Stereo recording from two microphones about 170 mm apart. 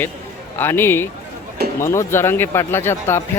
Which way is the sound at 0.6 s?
15° left (ahead or behind).